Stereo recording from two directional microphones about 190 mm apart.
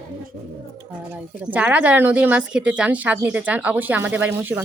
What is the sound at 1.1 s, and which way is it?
Speech, 10° right (ahead or behind).